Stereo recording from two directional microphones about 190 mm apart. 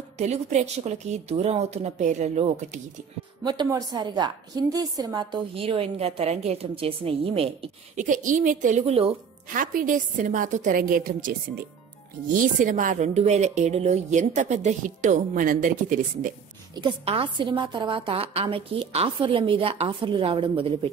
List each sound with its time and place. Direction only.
0.2 s a woman's voice: 35° right (ahead or behind)
3.4 s a woman's voice: 20° right (ahead or behind)
9.5 s a woman's voice: 45° right (ahead or behind)
16.7 s a woman's voice: 25° right (ahead or behind)